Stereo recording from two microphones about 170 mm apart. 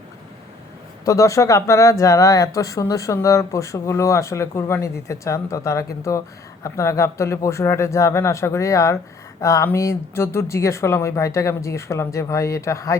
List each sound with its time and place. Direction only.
1.0 s speech: 20° left (ahead or behind)